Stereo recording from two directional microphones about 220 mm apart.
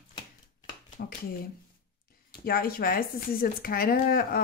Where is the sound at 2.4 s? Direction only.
40° left (ahead or behind).